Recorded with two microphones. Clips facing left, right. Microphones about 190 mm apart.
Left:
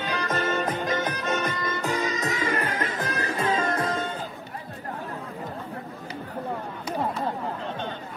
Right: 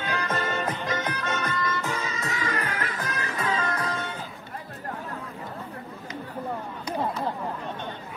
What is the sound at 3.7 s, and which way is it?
Music, 25° left (ahead or behind).